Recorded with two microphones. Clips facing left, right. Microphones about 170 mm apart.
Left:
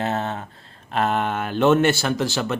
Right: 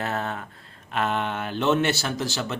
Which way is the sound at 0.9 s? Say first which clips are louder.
Left 4 dB; 40° left (ahead or behind).